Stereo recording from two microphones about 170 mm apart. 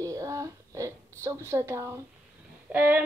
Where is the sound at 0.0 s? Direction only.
20° right (ahead or behind).